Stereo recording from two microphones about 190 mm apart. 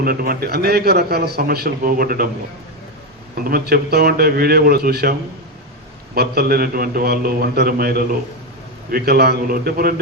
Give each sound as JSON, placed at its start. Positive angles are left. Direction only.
{"t": 0.0, "sound": "a man's voice", "side_deg": -50}
{"t": 3.4, "sound": "a man's voice", "side_deg": -55}
{"t": 6.1, "sound": "a man's voice", "side_deg": -55}